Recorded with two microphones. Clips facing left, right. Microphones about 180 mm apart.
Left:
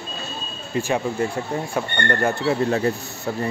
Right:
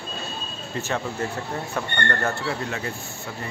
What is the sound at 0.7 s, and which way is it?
Speech, 15° left (ahead or behind).